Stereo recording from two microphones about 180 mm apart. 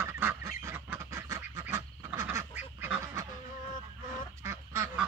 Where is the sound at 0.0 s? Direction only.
10° right (ahead or behind).